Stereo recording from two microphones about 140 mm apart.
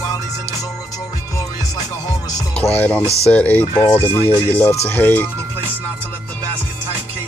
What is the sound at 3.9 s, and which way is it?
Speech, 20° right (ahead or behind).